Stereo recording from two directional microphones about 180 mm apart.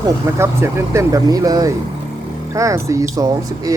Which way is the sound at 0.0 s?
15° right (ahead or behind).